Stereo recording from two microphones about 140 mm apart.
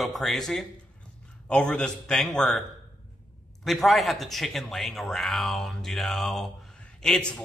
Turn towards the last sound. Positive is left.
turn(degrees=5)  # may be behind; listen again after turning